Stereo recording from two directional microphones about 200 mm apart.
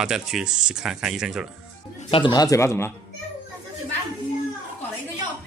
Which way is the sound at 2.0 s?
25° left (ahead or behind).